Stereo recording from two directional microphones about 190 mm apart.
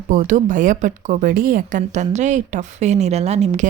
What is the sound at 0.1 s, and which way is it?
A woman's voice, 40° right (ahead or behind).